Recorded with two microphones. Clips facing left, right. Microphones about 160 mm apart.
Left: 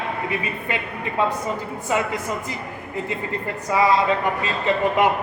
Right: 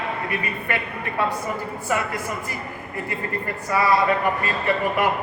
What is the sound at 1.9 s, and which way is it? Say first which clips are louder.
Speech: left 2 dB; 20° left (ahead or behind).